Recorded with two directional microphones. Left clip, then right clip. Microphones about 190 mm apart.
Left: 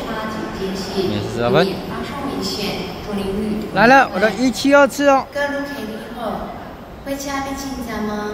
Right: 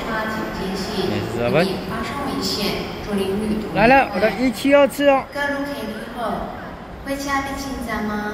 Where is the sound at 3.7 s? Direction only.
25° left (ahead or behind).